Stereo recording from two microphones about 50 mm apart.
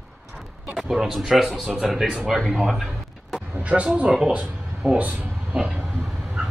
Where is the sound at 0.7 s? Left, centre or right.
Centre.